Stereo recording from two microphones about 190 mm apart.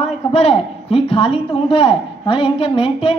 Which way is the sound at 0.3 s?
30° left (ahead or behind).